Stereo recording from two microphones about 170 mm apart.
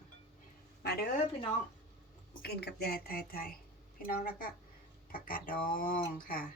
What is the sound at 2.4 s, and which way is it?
Speech, 70° left (ahead or behind).